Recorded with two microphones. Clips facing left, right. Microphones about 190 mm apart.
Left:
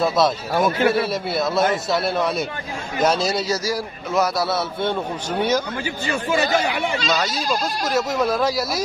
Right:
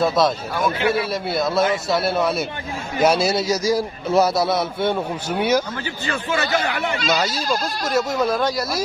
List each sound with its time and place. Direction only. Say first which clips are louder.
0.0 s speech: right 1 dB; centre (ahead or behind)
0.6 s a man's voice: left 3 dB; 45° left (ahead or behind)
0.9 s a man's voice: even; centre (ahead or behind)
3.7 s a man's voice: right 4 dB; 25° right (ahead or behind)
4.5 s a man's voice: right 2 dB; 15° right (ahead or behind)
7.2 s speech: right 1 dB; centre (ahead or behind)